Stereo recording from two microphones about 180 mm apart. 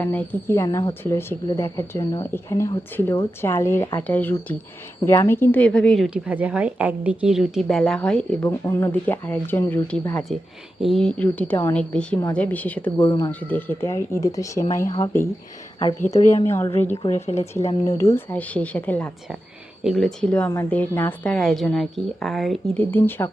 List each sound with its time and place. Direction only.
0.0 s a woman's voice: 10° left (ahead or behind)
8.4 s speech: 15° left (ahead or behind)
13.0 s speech: 20° left (ahead or behind)
13.5 s speech: 10° left (ahead or behind)
16.0 s speech: 40° left (ahead or behind)
16.5 s a woman's voice: 15° left (ahead or behind)